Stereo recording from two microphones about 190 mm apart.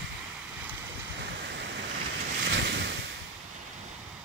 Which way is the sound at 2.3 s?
65° right (ahead or behind).